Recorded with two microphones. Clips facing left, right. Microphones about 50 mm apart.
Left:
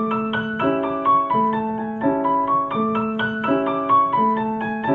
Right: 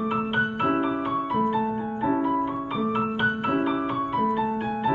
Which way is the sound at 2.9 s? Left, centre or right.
Left.